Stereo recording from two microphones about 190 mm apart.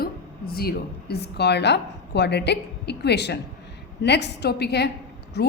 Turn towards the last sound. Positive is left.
turn(degrees=60)  # may be behind; listen again after turning